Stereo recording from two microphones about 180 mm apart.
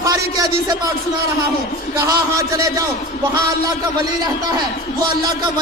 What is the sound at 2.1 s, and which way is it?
Speech, 20° right (ahead or behind).